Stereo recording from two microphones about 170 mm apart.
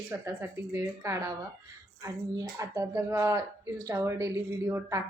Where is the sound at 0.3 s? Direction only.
15° right (ahead or behind).